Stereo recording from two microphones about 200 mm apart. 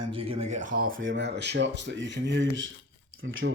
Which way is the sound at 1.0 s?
65° right (ahead or behind).